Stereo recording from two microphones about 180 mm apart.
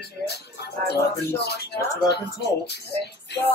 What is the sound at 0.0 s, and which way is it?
Speech, 65° left (ahead or behind).